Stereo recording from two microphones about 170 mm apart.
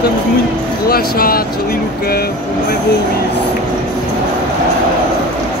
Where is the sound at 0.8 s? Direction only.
60° left (ahead or behind).